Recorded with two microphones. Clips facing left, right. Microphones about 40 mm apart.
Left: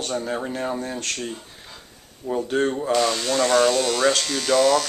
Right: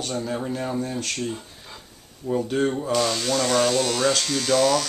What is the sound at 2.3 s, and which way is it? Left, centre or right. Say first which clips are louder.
Speech: left 1 dB; centre.